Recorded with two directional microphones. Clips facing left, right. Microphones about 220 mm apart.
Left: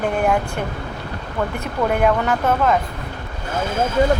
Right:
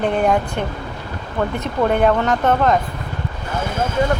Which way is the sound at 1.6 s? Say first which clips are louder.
Right 2 dB; 5° left (ahead or behind).